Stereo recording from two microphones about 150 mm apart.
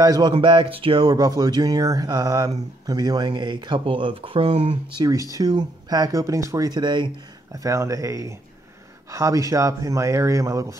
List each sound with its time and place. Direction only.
0.0 s speech: 25° right (ahead or behind)
5.0 s speech: 20° right (ahead or behind)